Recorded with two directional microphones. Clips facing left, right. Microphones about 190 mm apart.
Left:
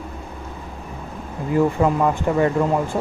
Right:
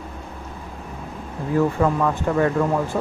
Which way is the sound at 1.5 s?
15° left (ahead or behind).